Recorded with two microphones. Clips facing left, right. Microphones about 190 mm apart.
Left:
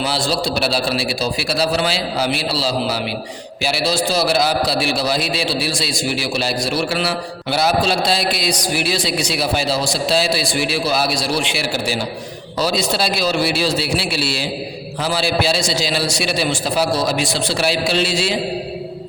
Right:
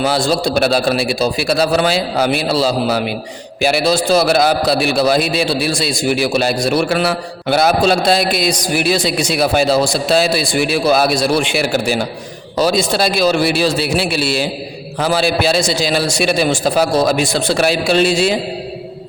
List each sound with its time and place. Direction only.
0.0 s a man's voice: 50° right (ahead or behind)